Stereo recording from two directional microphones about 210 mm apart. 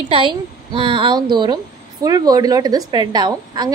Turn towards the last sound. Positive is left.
turn(degrees=-20)  # may be behind; listen again after turning